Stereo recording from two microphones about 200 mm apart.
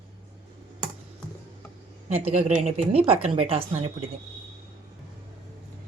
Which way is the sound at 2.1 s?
30° right (ahead or behind).